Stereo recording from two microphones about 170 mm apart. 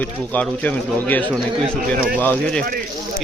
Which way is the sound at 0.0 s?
10° left (ahead or behind).